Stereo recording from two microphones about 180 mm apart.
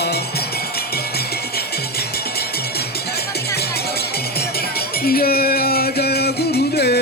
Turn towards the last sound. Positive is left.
turn(degrees=65)  # may be behind; listen again after turning